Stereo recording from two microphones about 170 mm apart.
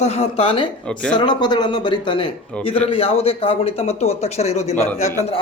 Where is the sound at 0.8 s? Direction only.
5° left (ahead or behind).